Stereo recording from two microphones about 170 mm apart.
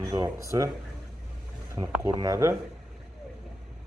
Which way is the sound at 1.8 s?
20° right (ahead or behind).